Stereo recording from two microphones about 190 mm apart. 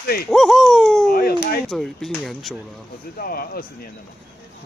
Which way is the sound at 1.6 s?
Centre (ahead or behind).